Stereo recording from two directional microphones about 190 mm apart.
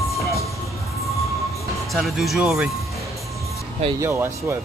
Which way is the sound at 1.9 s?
Centre (ahead or behind).